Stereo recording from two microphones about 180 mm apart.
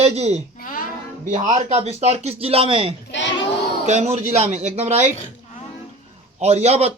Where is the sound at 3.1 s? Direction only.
80° left.